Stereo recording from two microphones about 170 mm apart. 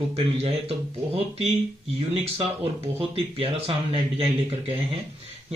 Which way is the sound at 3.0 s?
35° right (ahead or behind).